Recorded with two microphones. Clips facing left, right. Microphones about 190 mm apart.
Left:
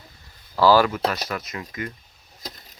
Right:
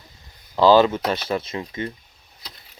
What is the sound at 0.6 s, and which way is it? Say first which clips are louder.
Speech: right 2 dB; 20° right (ahead or behind).